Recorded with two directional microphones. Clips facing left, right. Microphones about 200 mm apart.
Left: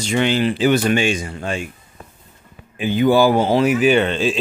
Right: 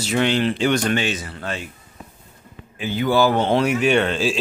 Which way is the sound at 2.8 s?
15° left (ahead or behind).